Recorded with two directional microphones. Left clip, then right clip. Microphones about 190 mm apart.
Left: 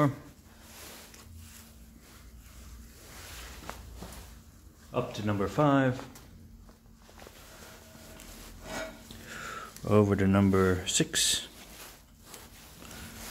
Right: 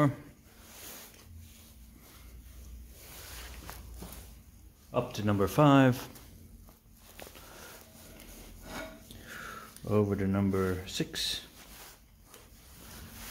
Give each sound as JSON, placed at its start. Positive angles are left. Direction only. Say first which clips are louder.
{"t": 4.9, "sound": "speech", "louder": "right 1 dB", "side_deg": -45}
{"t": 9.3, "sound": "a sound", "louder": "left 3 dB", "side_deg": 5}
{"t": 9.8, "sound": "speech", "louder": "left 5 dB", "side_deg": 25}